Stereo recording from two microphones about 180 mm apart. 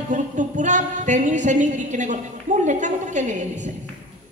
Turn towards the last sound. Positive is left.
turn(degrees=-45)  # may be behind; listen again after turning